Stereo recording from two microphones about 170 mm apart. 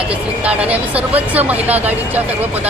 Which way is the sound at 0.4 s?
10° right (ahead or behind).